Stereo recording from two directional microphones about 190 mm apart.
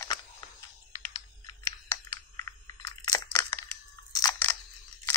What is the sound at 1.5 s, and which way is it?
Computer keyboard, 15° left (ahead or behind).